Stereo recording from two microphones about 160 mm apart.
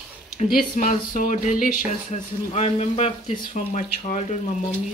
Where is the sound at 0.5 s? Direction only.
55° left (ahead or behind).